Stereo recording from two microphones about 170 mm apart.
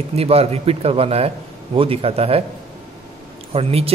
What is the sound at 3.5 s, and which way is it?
Speech, 35° right (ahead or behind).